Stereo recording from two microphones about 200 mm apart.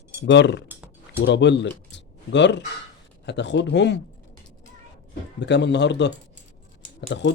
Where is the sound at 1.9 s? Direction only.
60° left (ahead or behind).